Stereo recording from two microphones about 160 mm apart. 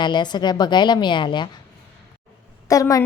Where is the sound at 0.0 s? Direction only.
25° left (ahead or behind).